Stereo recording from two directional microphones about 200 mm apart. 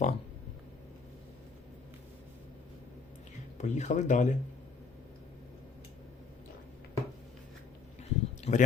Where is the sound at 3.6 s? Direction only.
35° left (ahead or behind).